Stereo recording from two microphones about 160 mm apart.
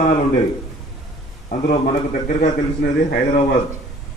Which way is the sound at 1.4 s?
50° left (ahead or behind).